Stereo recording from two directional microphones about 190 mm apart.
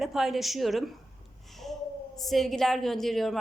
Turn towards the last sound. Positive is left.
turn(degrees=0)  # may be behind; listen again after turning